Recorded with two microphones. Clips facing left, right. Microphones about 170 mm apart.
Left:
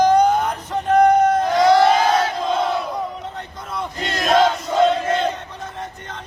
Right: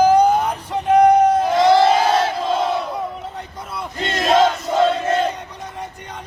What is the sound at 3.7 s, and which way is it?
Crowd, centre (ahead or behind).